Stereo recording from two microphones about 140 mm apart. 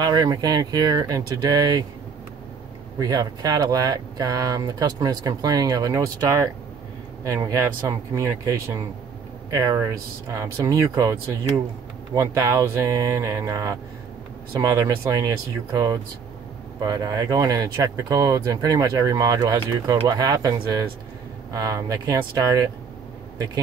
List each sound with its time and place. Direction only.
0.0 s speech: 30° right (ahead or behind)
3.0 s speech: 25° right (ahead or behind)
21.5 s speech: 25° right (ahead or behind)